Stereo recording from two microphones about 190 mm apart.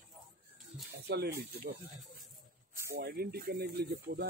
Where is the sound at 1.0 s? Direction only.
55° right (ahead or behind).